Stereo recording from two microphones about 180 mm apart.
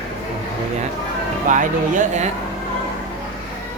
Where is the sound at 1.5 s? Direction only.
45° right (ahead or behind).